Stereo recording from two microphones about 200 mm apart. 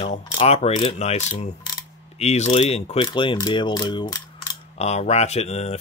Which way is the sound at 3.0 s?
25° left (ahead or behind).